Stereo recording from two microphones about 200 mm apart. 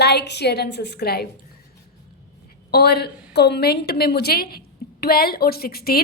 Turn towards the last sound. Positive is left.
turn(degrees=50)  # may be behind; listen again after turning